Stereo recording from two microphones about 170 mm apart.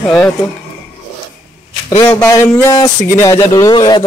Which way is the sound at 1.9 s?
15° left (ahead or behind).